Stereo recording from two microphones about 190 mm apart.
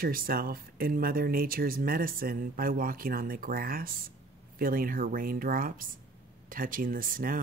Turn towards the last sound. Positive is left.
turn(degrees=-45)  # may be behind; listen again after turning